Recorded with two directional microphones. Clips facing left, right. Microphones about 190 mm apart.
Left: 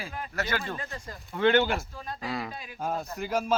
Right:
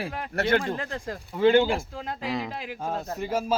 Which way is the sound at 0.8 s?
70° right (ahead or behind).